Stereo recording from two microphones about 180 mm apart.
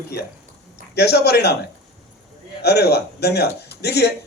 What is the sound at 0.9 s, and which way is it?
Speech, 65° left (ahead or behind).